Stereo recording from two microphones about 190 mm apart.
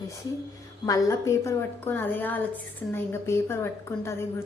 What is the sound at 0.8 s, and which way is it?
A woman's voice, 15° left (ahead or behind).